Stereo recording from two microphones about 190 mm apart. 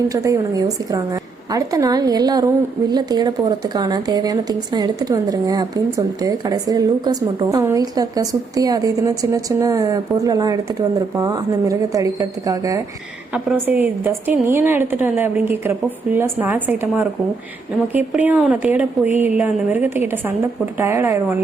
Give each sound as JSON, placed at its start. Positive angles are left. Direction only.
{"t": 0.1, "sound": "a woman's voice", "side_deg": -20}
{"t": 13.3, "sound": "a woman's voice", "side_deg": -5}